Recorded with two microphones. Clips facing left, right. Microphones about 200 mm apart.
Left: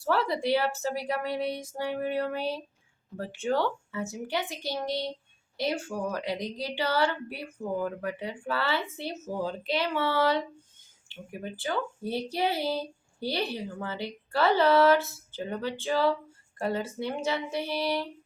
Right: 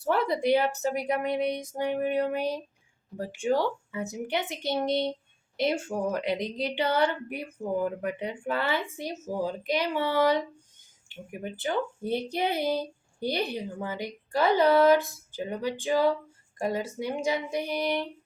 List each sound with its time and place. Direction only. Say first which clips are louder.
0.0 s speech: right 2 dB; 20° right (ahead or behind)